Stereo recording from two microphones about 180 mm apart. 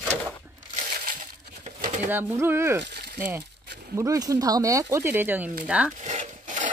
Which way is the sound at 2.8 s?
65° right (ahead or behind).